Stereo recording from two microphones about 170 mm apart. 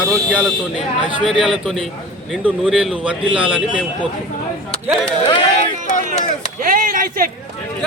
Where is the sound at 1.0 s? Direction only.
30° right (ahead or behind).